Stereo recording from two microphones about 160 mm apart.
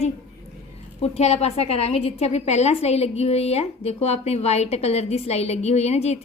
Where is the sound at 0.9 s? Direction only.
40° left (ahead or behind).